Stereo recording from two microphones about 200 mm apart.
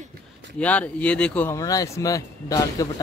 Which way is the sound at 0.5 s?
5° left (ahead or behind).